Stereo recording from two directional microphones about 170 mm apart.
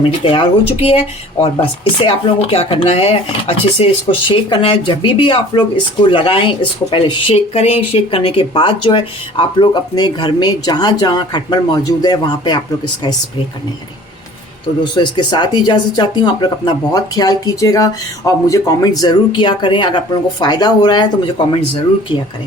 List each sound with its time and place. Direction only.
0.2 s speech: 30° left (ahead or behind)
14.9 s speech: 25° left (ahead or behind)